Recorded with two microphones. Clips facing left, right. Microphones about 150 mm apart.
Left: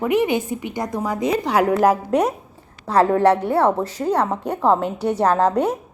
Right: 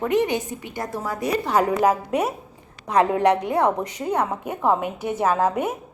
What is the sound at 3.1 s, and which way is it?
Speech, 15° right (ahead or behind).